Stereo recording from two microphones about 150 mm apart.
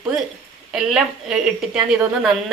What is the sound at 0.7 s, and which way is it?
Speech, 5° right (ahead or behind).